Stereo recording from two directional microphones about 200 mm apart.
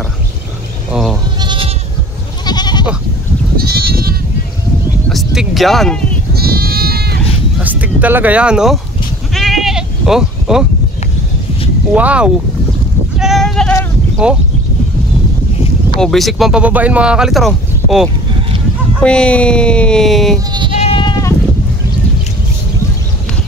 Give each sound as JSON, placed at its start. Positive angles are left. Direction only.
{"t": 1.4, "sound": "goat", "side_deg": -25}
{"t": 2.4, "sound": "goat", "side_deg": 20}
{"t": 3.5, "sound": "goat", "side_deg": -50}
{"t": 5.1, "sound": "a sound", "side_deg": 0}
{"t": 6.3, "sound": "sheep", "side_deg": -50}
{"t": 7.6, "sound": "speech", "side_deg": -10}
{"t": 9.3, "sound": "sheep", "side_deg": 0}
{"t": 11.9, "sound": "speech", "side_deg": -5}
{"t": 13.2, "sound": "sheep", "side_deg": 0}
{"t": 14.2, "sound": "speech", "side_deg": -5}
{"t": 16.0, "sound": "speech", "side_deg": 0}
{"t": 20.8, "sound": "sheep", "side_deg": 25}